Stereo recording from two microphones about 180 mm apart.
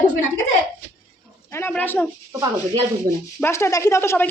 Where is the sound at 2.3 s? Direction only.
15° right (ahead or behind).